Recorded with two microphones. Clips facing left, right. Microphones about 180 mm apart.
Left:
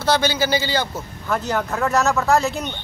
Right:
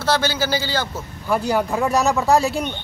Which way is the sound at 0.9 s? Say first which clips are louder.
Right 2 dB; 10° right (ahead or behind).